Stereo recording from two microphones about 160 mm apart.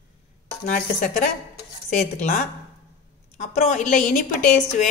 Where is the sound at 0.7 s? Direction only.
55° left (ahead or behind).